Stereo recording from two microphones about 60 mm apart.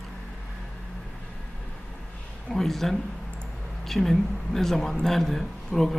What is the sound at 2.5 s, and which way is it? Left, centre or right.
Speech, centre.